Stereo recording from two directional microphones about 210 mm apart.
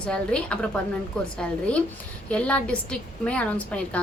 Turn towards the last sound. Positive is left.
turn(degrees=5)  # may be behind; listen again after turning